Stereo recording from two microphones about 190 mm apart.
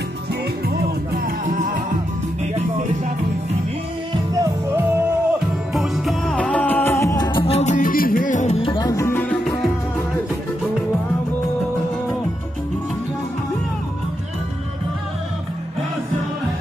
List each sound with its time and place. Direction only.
0.7 s music: 50° right (ahead or behind)
4.1 s music: 20° right (ahead or behind)
5.8 s music: centre (ahead or behind); by 8.5 s 40° left (ahead or behind)
8.6 s music: 20° left (ahead or behind)